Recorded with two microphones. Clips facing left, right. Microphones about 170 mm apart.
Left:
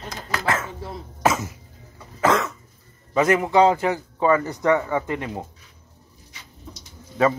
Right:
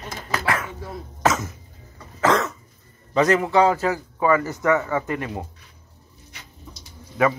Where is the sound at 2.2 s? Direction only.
5° left (ahead or behind).